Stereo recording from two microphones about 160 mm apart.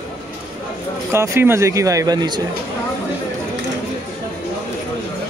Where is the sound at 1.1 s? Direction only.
15° right (ahead or behind).